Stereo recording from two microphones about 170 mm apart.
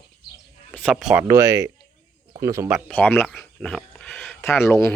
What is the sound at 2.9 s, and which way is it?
Speech, 10° left (ahead or behind).